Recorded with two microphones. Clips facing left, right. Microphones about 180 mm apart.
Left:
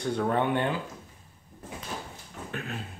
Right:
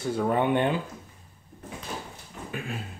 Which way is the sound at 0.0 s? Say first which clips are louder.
Right 2 dB; 5° right (ahead or behind).